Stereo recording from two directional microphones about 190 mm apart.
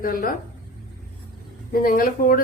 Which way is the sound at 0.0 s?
45° left (ahead or behind).